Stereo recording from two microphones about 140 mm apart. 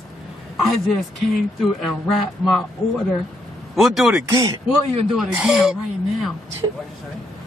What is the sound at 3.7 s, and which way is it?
Speech, centre (ahead or behind).